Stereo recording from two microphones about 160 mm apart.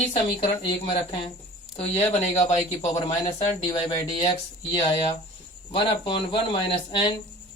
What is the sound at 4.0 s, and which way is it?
Speech, 30° left (ahead or behind).